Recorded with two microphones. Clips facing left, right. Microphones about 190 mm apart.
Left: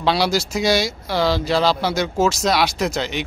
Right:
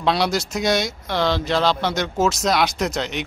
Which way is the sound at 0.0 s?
5° left (ahead or behind).